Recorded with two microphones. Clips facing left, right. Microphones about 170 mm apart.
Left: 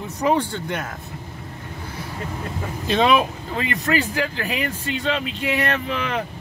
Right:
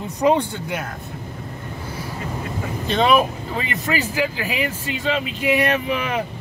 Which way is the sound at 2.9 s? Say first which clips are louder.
Right 1 dB; centre (ahead or behind).